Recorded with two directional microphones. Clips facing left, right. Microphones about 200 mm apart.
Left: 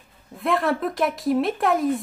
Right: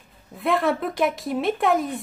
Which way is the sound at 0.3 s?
Centre (ahead or behind).